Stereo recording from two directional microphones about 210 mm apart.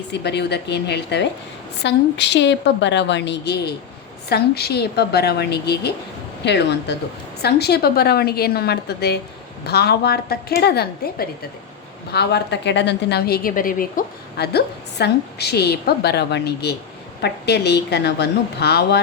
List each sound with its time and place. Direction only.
0.1 s a woman's voice: 55° left (ahead or behind)